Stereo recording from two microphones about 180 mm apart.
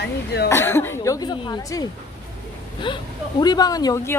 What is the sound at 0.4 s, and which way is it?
Speech, 15° left (ahead or behind).